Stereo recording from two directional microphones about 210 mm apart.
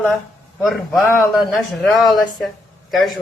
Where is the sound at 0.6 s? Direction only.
Centre (ahead or behind).